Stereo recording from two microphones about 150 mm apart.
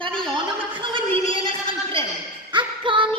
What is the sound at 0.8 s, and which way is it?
Speech, 35° right (ahead or behind).